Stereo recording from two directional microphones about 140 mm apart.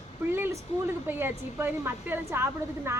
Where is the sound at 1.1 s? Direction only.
15° right (ahead or behind).